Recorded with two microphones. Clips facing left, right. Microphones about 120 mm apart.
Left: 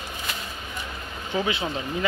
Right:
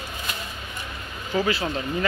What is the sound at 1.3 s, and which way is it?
Speech, 15° left (ahead or behind).